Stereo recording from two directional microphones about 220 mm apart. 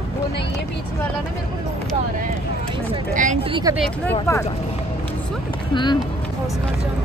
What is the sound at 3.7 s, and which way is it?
Speech, 5° left (ahead or behind).